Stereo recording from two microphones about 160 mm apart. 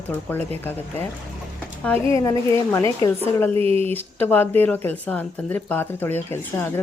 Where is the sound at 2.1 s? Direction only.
20° left (ahead or behind).